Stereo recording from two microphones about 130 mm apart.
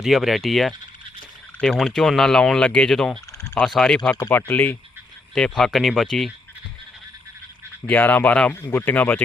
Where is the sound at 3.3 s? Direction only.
25° left (ahead or behind).